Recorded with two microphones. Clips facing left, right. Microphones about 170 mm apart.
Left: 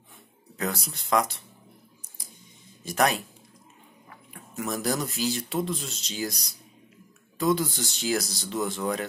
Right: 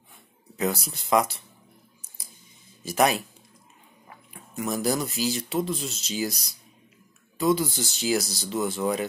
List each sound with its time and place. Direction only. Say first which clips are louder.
0.6 s speech: right 4 dB; 5° right (ahead or behind)
2.8 s speech: right 2 dB; 5° right (ahead or behind)
4.3 s speech: right 2 dB; centre (ahead or behind)
7.3 s speech: right 1 dB; centre (ahead or behind)